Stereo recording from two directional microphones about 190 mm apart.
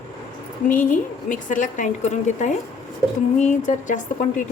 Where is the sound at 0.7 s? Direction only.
45° left (ahead or behind).